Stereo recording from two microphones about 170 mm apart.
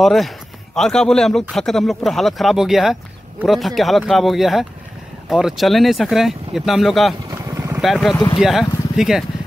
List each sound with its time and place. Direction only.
0.0 s speech: centre (ahead or behind)
7.2 s vehicle: 15° right (ahead or behind)
7.8 s speech: centre (ahead or behind)